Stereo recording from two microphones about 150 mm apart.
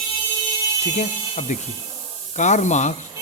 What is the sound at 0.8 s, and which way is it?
Speech, 55° left (ahead or behind).